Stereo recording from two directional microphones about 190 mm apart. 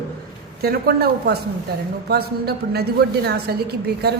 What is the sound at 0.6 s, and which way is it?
A man's voice, 55° right (ahead or behind).